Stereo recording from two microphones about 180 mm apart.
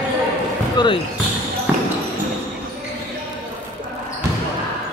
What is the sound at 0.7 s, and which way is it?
Speech, 25° left (ahead or behind).